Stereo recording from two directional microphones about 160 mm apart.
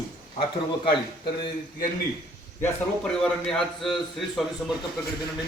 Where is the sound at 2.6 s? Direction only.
5° left (ahead or behind).